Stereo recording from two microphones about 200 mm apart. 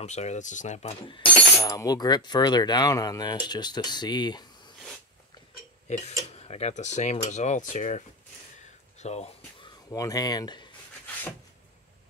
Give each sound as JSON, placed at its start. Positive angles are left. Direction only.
{"t": 0.0, "sound": "cutlery", "side_deg": 35}
{"t": 5.9, "sound": "speech", "side_deg": 35}
{"t": 8.5, "sound": "a sound", "side_deg": 35}
{"t": 9.8, "sound": "cutlery", "side_deg": 15}